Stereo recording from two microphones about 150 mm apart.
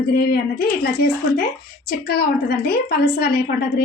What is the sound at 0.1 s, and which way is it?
A woman's voice, 90° left.